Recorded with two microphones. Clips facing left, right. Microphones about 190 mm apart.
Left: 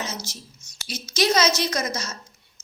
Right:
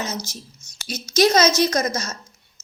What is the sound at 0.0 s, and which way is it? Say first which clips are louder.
A woman's voice: right 4 dB; 40° right (ahead or behind).